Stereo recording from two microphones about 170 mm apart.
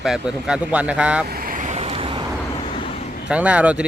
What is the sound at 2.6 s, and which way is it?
Vehicle, 30° left (ahead or behind).